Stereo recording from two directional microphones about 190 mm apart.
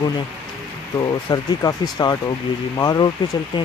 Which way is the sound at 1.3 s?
20° left (ahead or behind).